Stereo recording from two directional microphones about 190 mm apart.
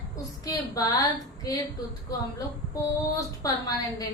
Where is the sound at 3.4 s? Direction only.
20° left (ahead or behind).